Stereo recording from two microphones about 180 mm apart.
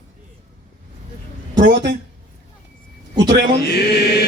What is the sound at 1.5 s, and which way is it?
Speech, 75° right (ahead or behind).